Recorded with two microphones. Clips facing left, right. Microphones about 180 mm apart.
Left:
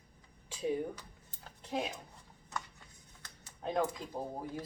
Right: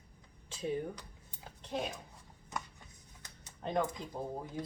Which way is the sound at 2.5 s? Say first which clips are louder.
Right 1 dB; 15° right (ahead or behind).